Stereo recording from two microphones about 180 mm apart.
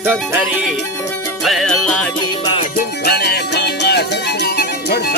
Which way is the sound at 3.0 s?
60° left (ahead or behind).